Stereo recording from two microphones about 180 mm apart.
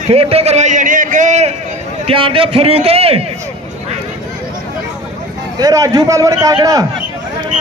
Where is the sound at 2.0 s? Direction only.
30° right (ahead or behind).